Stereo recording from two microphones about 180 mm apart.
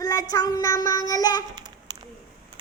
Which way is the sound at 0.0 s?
20° left (ahead or behind).